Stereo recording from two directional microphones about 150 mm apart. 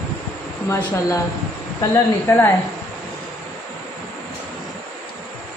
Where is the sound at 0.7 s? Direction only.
20° left (ahead or behind).